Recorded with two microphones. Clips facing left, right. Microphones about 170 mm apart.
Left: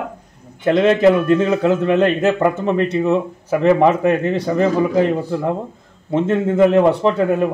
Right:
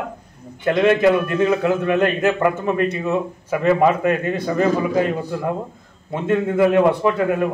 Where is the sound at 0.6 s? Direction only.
25° left (ahead or behind).